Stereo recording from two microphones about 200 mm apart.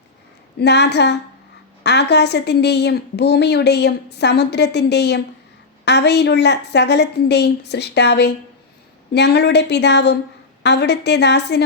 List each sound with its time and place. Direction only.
0.6 s a woman's voice: 55° left (ahead or behind)